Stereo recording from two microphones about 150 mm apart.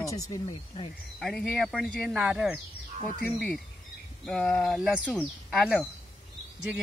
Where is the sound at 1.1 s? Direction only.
Centre (ahead or behind).